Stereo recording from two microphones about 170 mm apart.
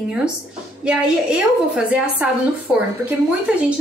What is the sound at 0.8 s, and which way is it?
A woman's voice, 5° right (ahead or behind).